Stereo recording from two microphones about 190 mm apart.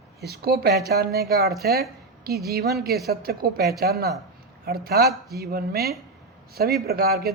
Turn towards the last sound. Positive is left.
turn(degrees=-55)  # may be behind; listen again after turning